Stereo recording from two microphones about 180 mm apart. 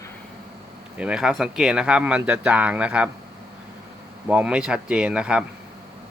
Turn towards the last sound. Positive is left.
turn(degrees=-5)  # may be behind; listen again after turning